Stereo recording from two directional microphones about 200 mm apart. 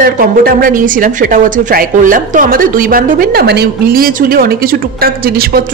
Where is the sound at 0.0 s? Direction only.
45° right (ahead or behind).